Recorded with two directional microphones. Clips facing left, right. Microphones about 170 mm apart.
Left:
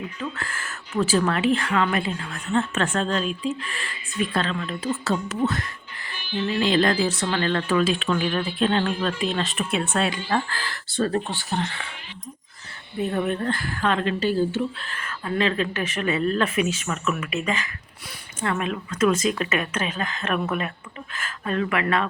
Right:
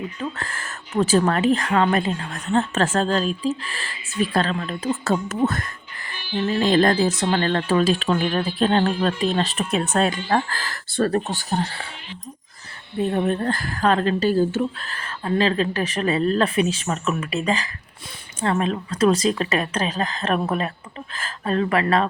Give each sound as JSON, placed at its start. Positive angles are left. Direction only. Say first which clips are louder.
{"t": 0.2, "sound": "a woman's voice", "louder": "right 2 dB", "side_deg": -40}
{"t": 13.0, "sound": "a woman's voice", "louder": "right 3 dB", "side_deg": -30}